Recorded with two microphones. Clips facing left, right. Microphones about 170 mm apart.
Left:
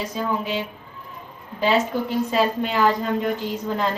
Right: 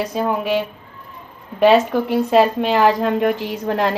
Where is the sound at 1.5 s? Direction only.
65° right (ahead or behind).